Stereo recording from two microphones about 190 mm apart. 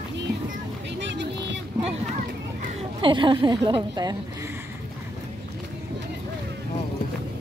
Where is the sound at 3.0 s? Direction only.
25° right (ahead or behind).